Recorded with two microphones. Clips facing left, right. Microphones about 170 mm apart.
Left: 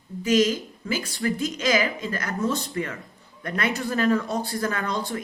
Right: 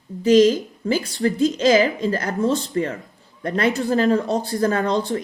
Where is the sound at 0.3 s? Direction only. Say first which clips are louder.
Right 7 dB; 40° right (ahead or behind).